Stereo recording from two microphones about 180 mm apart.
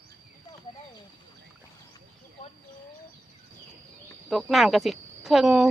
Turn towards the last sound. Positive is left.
turn(degrees=0)  # may be behind; listen again after turning